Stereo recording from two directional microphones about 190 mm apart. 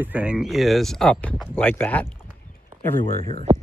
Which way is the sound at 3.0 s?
30° left (ahead or behind).